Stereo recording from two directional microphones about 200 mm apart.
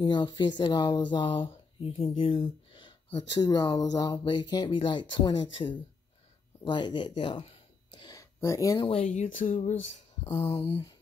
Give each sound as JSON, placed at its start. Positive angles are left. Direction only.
{"t": 0.0, "sound": "speech", "side_deg": 20}
{"t": 8.8, "sound": "speech", "side_deg": 35}
{"t": 10.2, "sound": "speech", "side_deg": 20}